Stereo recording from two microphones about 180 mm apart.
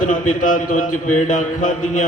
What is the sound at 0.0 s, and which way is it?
Mantra, 45° left (ahead or behind).